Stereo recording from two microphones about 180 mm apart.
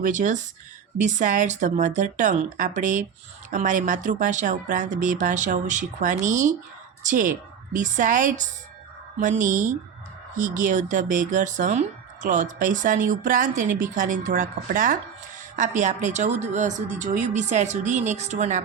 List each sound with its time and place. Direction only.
0.0 s speech: 45° right (ahead or behind)